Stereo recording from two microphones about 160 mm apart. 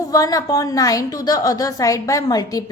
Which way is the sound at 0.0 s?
20° left (ahead or behind).